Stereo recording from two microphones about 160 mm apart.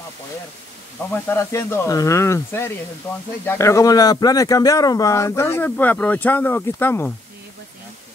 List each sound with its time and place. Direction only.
1.1 s speech: 15° left (ahead or behind)